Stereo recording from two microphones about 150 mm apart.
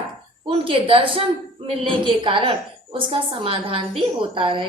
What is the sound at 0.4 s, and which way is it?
A woman's voice, 35° right (ahead or behind).